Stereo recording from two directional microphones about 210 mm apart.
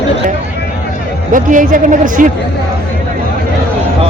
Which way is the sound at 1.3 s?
40° right (ahead or behind).